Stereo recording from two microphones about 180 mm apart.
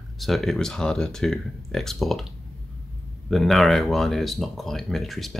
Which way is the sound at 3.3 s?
Centre (ahead or behind).